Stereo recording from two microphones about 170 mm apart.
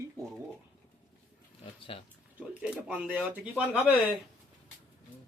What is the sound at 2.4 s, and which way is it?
Speech, 5° right (ahead or behind).